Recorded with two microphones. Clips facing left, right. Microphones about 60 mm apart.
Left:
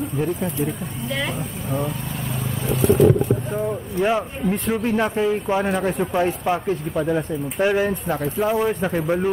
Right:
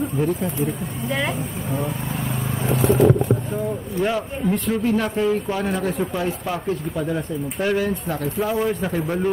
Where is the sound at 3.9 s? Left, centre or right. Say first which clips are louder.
Left 2 dB; centre.